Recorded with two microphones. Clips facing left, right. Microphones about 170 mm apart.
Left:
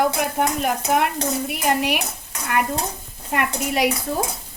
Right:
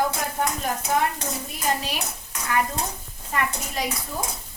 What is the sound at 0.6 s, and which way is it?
Speech, 75° left (ahead or behind).